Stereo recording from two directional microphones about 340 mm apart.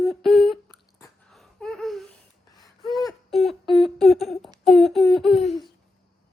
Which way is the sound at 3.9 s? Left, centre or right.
Centre.